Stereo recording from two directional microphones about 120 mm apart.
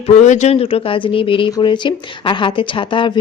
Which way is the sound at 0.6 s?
50° left (ahead or behind).